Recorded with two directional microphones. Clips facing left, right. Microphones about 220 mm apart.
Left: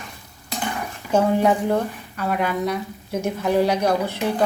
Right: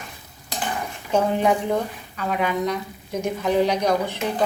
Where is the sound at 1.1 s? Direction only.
10° left (ahead or behind).